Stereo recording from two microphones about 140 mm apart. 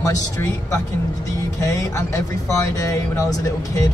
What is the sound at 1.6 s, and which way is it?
Speech, 20° left (ahead or behind).